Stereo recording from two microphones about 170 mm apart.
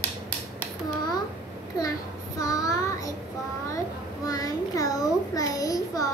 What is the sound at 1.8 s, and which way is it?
Child singing, 20° left (ahead or behind).